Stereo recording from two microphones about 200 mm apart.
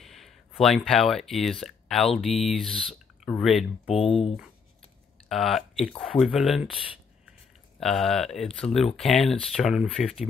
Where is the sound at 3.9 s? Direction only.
30° left (ahead or behind).